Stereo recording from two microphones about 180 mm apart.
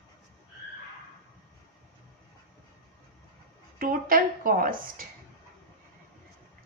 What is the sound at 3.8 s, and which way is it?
A woman's voice, 50° right (ahead or behind).